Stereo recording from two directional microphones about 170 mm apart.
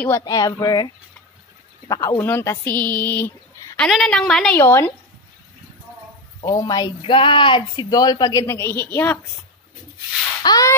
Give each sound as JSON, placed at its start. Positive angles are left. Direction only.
{"t": 0.0, "sound": "speech", "side_deg": 20}
{"t": 4.6, "sound": "speech", "side_deg": 15}
{"t": 6.4, "sound": "speech", "side_deg": 25}
{"t": 10.4, "sound": "speech", "side_deg": 25}